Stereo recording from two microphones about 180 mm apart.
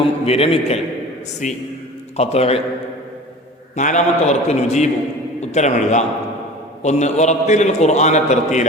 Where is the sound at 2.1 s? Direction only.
35° left (ahead or behind).